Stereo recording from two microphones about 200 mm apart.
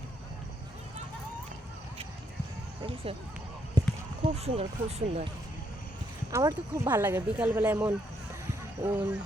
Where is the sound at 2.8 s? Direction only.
30° right (ahead or behind).